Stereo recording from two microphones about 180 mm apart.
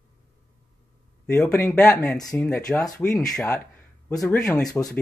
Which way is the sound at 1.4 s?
15° left (ahead or behind).